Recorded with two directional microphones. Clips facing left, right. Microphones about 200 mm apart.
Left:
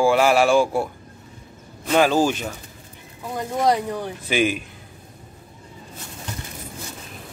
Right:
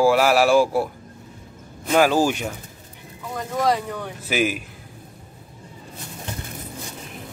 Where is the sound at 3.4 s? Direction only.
30° left (ahead or behind).